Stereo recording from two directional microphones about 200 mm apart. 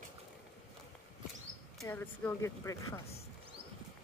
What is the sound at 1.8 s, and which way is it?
Speech, 10° left (ahead or behind).